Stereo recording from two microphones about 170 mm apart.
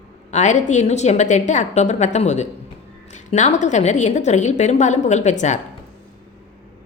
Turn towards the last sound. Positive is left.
turn(degrees=45)  # may be behind; listen again after turning